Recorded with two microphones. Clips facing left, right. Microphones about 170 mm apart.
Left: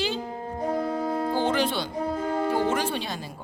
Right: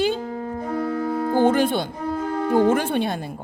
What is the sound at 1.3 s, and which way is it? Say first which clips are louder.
A woman's voice: right 9 dB; 50° right (ahead or behind).